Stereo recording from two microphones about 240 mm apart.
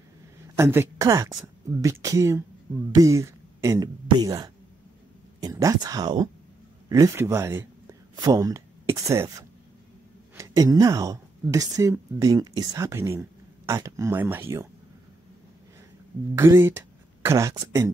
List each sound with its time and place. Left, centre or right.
0.6 s a woman's voice: centre
16.3 s speech: centre